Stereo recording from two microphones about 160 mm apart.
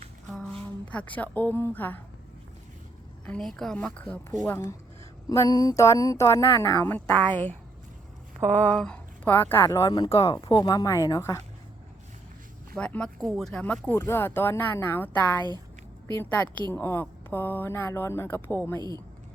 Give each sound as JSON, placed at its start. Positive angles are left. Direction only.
{"t": 0.3, "sound": "speech", "side_deg": 5}
{"t": 3.2, "sound": "speech", "side_deg": 5}
{"t": 8.5, "sound": "speech", "side_deg": 5}
{"t": 12.7, "sound": "speech", "side_deg": 5}
{"t": 18.8, "sound": "speech", "side_deg": -25}